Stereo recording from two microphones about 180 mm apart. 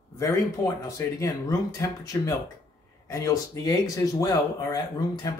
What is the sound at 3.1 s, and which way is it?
Speech, 20° left (ahead or behind).